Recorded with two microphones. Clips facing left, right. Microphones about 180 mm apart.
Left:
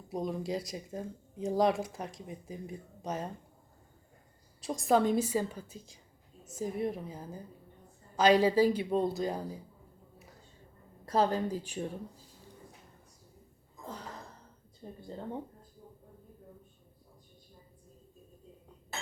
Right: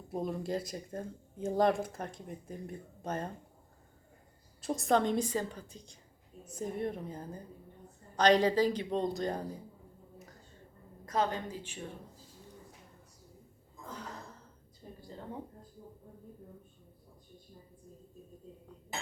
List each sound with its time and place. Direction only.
0.1 s speech: centre (ahead or behind)
4.6 s a woman's voice: centre (ahead or behind)
11.0 s speech: 35° left (ahead or behind)